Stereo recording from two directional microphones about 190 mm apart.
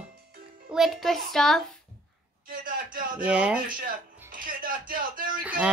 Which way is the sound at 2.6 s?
45° right (ahead or behind).